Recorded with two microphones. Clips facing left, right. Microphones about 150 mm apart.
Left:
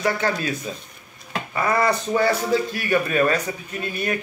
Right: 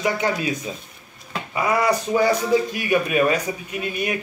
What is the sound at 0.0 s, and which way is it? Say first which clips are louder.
Speech: right 1 dB; 15° right (ahead or behind).